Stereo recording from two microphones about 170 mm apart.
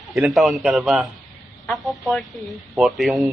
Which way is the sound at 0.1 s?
Centre (ahead or behind).